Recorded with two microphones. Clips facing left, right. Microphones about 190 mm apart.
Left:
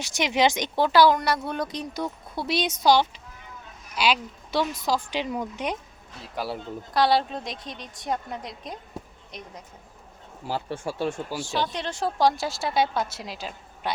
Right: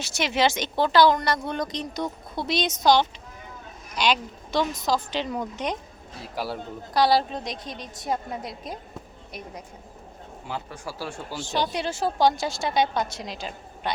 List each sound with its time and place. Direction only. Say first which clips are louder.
0.0 s speech: left 1 dB; 15° left (ahead or behind); by 8.8 s 5° right (ahead or behind)
10.4 s a man's voice: left 5 dB; 30° left (ahead or behind)
11.3 s speech: right 1 dB; 20° right (ahead or behind); by 13.9 s 5° left (ahead or behind)